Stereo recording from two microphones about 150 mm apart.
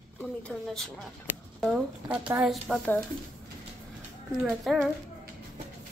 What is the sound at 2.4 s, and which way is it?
Speech, centre (ahead or behind).